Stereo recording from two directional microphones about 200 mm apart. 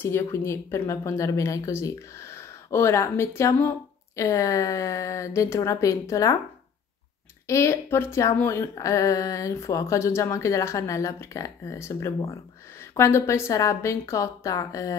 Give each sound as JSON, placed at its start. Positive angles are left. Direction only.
{"t": 0.0, "sound": "speech", "side_deg": 10}
{"t": 7.4, "sound": "speech", "side_deg": 15}